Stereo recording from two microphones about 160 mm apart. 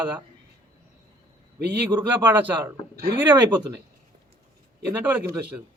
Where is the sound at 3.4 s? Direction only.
25° right (ahead or behind).